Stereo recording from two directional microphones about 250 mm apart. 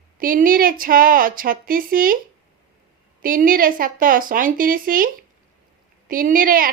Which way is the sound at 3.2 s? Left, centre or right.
Right.